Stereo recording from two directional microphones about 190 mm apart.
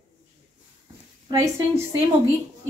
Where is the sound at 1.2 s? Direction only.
15° right (ahead or behind).